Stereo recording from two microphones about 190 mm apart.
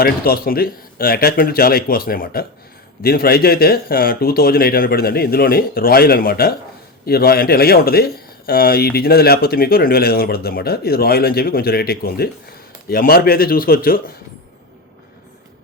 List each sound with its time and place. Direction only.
0.0 s speech: 50° left (ahead or behind)